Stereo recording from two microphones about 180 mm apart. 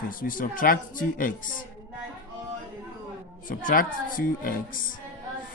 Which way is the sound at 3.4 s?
50° left (ahead or behind).